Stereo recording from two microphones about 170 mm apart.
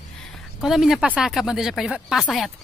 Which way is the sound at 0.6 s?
Centre (ahead or behind).